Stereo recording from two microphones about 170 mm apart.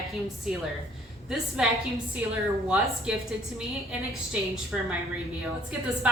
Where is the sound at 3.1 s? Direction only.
5° right (ahead or behind).